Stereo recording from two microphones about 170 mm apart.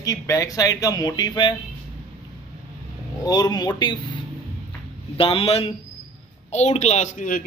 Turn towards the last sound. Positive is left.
turn(degrees=50)  # may be behind; listen again after turning